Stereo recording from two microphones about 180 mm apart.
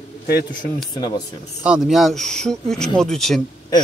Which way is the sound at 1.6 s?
5° right (ahead or behind).